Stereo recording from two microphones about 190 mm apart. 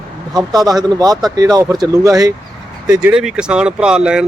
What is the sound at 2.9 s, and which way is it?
Speech, 5° right (ahead or behind).